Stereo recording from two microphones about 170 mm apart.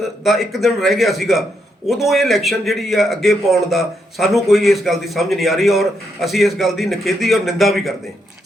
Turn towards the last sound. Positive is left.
turn(degrees=0)  # may be behind; listen again after turning